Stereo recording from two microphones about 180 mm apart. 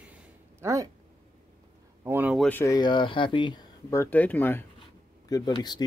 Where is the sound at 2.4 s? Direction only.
10° left (ahead or behind).